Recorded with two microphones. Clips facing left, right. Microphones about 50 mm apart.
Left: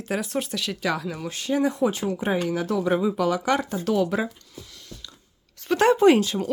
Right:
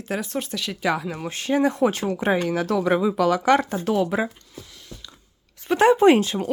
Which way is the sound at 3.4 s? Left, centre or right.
Right.